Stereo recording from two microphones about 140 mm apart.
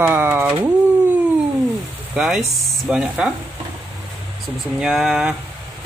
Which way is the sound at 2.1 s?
5° right (ahead or behind).